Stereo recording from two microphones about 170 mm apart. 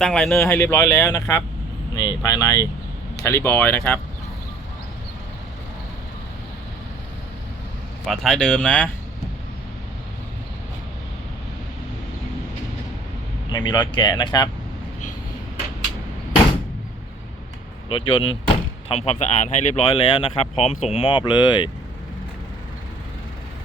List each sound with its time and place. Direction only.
0.0 s speech: 5° left (ahead or behind)
0.4 s speech: 15° left (ahead or behind)
8.0 s speech: centre (ahead or behind)
13.5 s speech: 25° left (ahead or behind)
17.8 s speech: 30° left (ahead or behind)
20.0 s speech: 30° left (ahead or behind)